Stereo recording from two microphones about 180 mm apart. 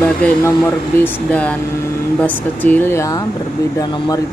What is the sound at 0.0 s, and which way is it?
Speech, 5° left (ahead or behind).